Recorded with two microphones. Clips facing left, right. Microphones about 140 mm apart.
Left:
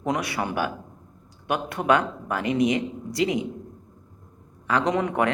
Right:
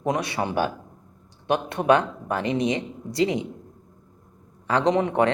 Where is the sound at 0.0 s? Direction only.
25° right (ahead or behind).